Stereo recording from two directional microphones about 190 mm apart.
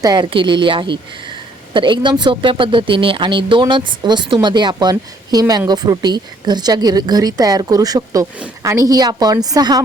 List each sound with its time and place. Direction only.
0.0 s speech: 20° right (ahead or behind)